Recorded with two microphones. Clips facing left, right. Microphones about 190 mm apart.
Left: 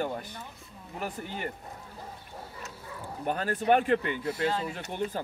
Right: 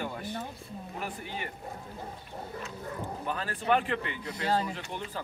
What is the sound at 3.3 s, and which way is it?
Speech, 45° left (ahead or behind).